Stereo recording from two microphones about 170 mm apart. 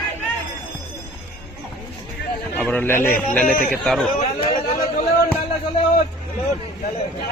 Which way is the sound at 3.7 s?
5° left (ahead or behind).